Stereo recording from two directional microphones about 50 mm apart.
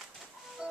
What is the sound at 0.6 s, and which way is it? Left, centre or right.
Music, centre.